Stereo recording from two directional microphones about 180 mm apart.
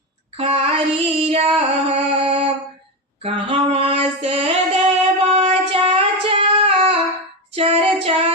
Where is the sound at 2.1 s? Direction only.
30° right (ahead or behind).